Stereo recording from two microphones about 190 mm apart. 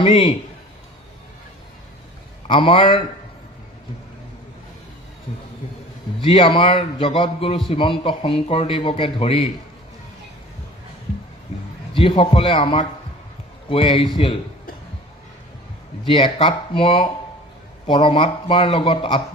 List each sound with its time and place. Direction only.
2.5 s speech: 25° left (ahead or behind)
6.1 s speech: 25° left (ahead or behind)
11.9 s speech: 30° left (ahead or behind)
16.0 s speech: 25° left (ahead or behind)